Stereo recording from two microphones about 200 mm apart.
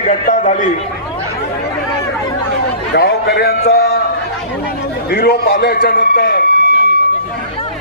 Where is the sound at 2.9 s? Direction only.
55° left (ahead or behind).